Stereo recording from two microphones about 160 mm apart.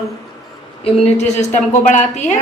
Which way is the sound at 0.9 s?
45° left (ahead or behind).